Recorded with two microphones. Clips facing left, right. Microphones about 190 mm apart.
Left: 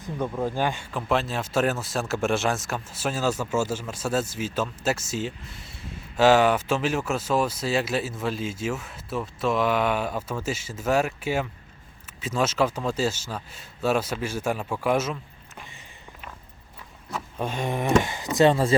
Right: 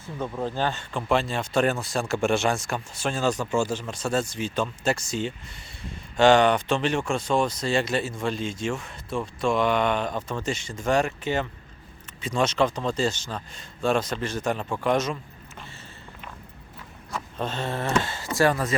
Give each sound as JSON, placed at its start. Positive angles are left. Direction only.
{"t": 0.0, "sound": "speech", "side_deg": 10}
{"t": 17.1, "sound": "speech", "side_deg": 5}